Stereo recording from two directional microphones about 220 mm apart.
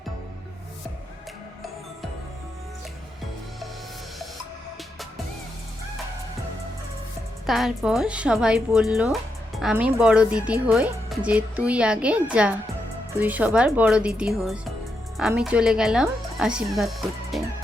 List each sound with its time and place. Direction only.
7.4 s speech: centre (ahead or behind)
17.3 s music: centre (ahead or behind)